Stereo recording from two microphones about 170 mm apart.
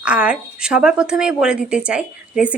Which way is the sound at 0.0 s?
5° right (ahead or behind).